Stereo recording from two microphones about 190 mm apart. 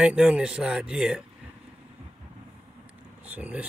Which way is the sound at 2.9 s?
10° right (ahead or behind).